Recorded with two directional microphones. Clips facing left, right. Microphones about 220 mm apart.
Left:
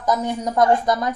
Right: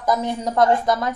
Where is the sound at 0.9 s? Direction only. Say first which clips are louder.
Even; 20° left (ahead or behind).